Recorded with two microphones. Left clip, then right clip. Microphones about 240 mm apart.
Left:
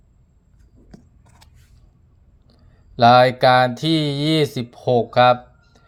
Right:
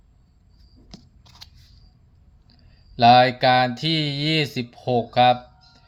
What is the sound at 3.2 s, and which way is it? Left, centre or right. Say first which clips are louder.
Speech: left 3 dB; centre.